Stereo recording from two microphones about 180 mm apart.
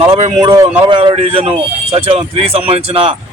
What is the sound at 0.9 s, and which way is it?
Speech, 30° right (ahead or behind).